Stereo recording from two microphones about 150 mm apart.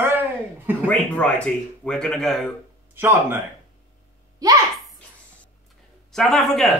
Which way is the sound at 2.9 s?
15° right (ahead or behind).